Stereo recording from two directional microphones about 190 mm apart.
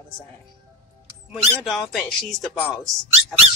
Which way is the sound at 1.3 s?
Centre (ahead or behind).